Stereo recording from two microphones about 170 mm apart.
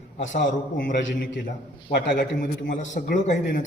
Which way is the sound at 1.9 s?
75° left (ahead or behind).